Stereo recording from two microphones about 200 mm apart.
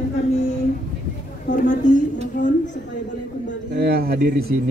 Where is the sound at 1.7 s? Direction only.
40° left (ahead or behind).